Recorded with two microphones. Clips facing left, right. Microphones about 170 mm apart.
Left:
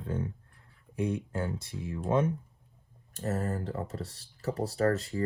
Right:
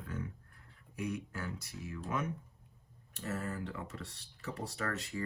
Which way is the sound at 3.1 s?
40° left (ahead or behind).